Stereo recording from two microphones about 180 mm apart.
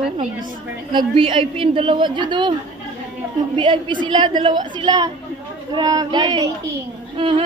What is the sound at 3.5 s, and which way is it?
A woman's voice, 25° right (ahead or behind).